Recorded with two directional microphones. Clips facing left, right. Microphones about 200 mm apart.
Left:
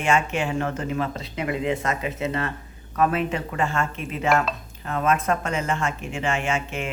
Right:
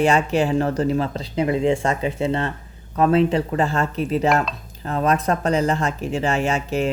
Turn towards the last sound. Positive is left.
turn(degrees=-35)  # may be behind; listen again after turning